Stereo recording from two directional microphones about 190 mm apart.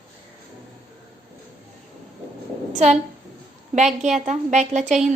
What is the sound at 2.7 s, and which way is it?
A woman's voice, 35° right (ahead or behind).